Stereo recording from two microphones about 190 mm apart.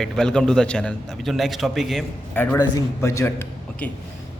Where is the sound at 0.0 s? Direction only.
5° left (ahead or behind).